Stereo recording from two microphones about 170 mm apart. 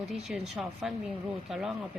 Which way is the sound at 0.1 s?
5° right (ahead or behind).